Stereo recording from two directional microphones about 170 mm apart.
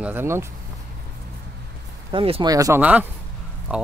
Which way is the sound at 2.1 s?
30° right (ahead or behind).